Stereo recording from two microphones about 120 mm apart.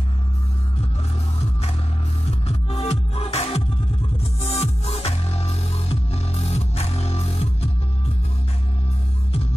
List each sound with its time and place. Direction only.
2.4 s music: 60° left (ahead or behind)